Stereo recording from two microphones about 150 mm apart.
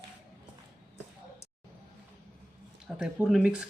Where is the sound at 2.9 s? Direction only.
5° right (ahead or behind).